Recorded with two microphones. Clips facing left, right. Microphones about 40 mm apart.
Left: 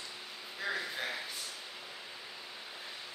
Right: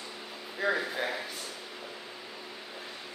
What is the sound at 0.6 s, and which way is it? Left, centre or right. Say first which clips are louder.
Speech: right 7 dB; centre.